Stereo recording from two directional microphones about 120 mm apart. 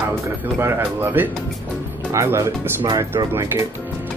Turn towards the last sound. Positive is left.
turn(degrees=-25)  # may be behind; listen again after turning